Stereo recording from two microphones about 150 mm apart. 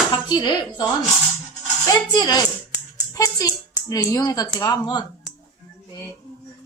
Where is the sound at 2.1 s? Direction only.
25° left (ahead or behind).